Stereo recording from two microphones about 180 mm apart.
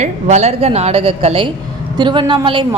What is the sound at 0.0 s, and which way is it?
A woman's voice, 40° right (ahead or behind).